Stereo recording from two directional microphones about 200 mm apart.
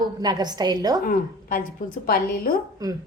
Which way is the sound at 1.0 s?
45° left (ahead or behind).